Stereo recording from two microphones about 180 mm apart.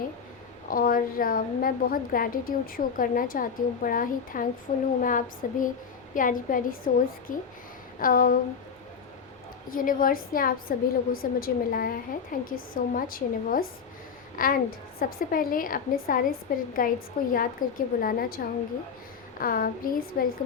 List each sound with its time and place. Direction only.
0.7 s a woman's voice: 50° left (ahead or behind)
9.6 s a woman's voice: 50° left (ahead or behind)
19.4 s a woman's voice: 50° left (ahead or behind)